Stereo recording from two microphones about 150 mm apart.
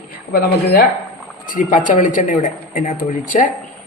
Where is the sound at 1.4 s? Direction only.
65° left (ahead or behind).